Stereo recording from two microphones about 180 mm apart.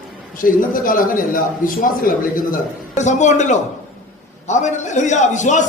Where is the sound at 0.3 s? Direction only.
50° left (ahead or behind).